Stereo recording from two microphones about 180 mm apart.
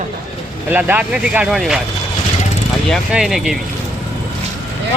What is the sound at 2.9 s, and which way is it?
Speech, centre (ahead or behind).